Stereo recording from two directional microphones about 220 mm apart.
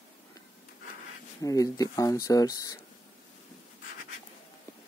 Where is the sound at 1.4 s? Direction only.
15° left (ahead or behind).